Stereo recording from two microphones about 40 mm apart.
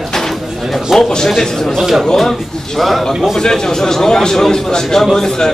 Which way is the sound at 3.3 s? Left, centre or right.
Centre.